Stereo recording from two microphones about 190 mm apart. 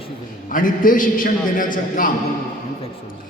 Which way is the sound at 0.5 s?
45° left (ahead or behind).